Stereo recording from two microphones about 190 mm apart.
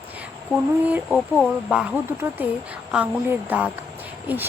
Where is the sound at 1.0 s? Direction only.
Centre (ahead or behind).